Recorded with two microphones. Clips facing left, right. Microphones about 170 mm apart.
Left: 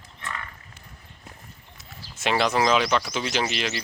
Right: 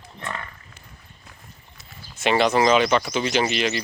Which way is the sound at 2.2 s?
Centre (ahead or behind).